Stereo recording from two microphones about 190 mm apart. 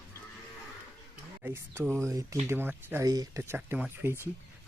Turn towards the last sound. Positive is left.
turn(degrees=-10)  # may be behind; listen again after turning